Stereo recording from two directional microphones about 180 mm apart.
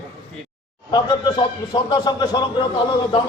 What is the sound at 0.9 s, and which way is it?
A man's voice, 25° left (ahead or behind).